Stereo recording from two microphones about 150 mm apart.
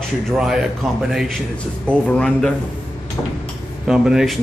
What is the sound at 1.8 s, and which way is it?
Speech, 5° left (ahead or behind).